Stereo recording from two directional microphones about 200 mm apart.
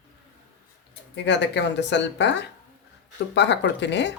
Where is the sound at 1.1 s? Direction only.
60° left (ahead or behind).